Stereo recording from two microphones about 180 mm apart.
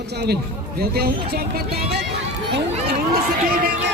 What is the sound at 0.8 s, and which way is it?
Speech, 60° right (ahead or behind).